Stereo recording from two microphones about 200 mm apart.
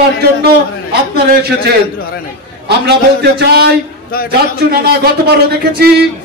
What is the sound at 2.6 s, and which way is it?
Speech, 55° right (ahead or behind).